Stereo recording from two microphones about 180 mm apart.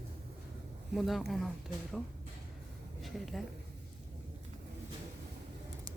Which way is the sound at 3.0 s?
Centre (ahead or behind).